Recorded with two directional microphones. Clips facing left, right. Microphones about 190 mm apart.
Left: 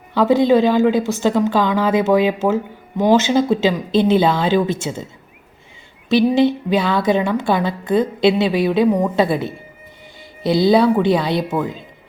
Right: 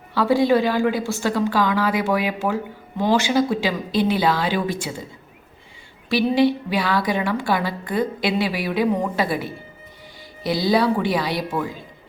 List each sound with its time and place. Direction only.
0.1 s a woman's voice: 20° left (ahead or behind)
6.1 s a woman's voice: 20° left (ahead or behind)